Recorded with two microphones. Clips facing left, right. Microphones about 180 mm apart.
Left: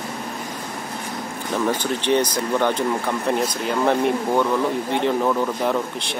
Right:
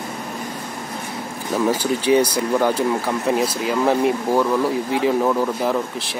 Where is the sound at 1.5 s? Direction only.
5° right (ahead or behind).